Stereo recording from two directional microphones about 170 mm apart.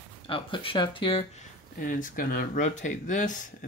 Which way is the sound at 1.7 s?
50° left (ahead or behind).